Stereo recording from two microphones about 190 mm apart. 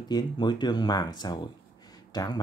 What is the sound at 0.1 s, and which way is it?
Speech, 25° left (ahead or behind).